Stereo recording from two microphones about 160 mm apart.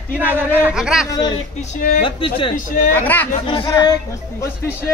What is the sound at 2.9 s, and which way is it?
Speech, 10° left (ahead or behind).